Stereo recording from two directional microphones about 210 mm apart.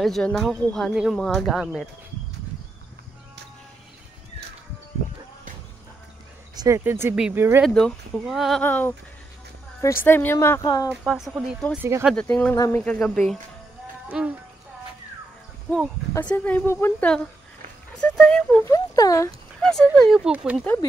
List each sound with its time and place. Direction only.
0.0 s speech: centre (ahead or behind)
6.5 s speech: 15° right (ahead or behind)
7.6 s speech: centre (ahead or behind)
10.0 s speech: 10° left (ahead or behind)
11.1 s speech: centre (ahead or behind)
12.2 s speech: 5° left (ahead or behind)
12.5 s speech: 15° left (ahead or behind)
12.8 s speech: 5° left (ahead or behind)
14.0 s music: 5° right (ahead or behind)
16.1 s speech: 10° left (ahead or behind)
18.7 s speech: 15° left (ahead or behind)
19.6 s speech: 5° left (ahead or behind)